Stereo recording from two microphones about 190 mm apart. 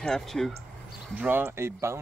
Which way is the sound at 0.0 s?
Centre (ahead or behind).